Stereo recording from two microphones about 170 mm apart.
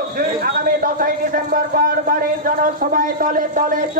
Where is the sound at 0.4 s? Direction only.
60° right (ahead or behind).